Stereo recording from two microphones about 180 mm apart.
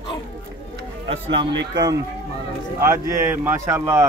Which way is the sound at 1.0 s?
30° right (ahead or behind).